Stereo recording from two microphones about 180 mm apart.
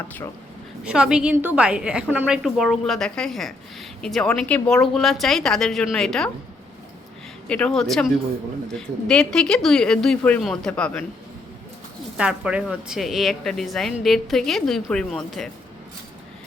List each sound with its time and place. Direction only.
0.9 s a woman's voice: 5° right (ahead or behind)
7.4 s a woman's voice: 5° left (ahead or behind)
12.1 s a woman's voice: 5° right (ahead or behind)